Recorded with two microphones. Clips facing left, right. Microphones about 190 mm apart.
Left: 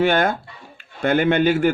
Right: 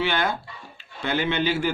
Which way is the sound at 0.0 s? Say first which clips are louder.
Left 7 dB; 50° left (ahead or behind).